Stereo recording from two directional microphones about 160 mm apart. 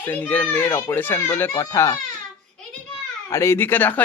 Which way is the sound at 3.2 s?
15° left (ahead or behind).